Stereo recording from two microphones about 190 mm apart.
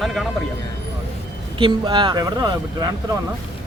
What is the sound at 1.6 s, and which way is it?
Speech, 25° right (ahead or behind).